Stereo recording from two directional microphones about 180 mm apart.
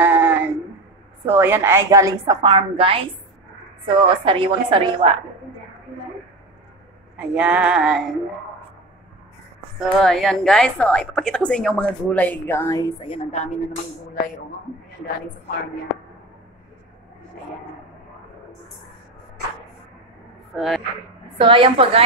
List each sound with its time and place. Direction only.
0.0 s a sound: 10° right (ahead or behind)
1.2 s a woman's voice: 15° right (ahead or behind); by 5.1 s 30° right (ahead or behind)
7.2 s a woman's voice: 5° right (ahead or behind)
9.8 s a woman's voice: centre (ahead or behind)
13.0 s a woman's voice: 30° left (ahead or behind)
20.5 s a woman's voice: centre (ahead or behind)
21.4 s a woman's voice: 30° right (ahead or behind)